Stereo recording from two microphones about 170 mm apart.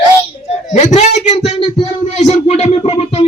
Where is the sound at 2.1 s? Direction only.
40° left (ahead or behind).